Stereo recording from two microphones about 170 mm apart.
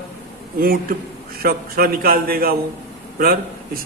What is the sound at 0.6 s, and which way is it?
Speech, 60° right (ahead or behind).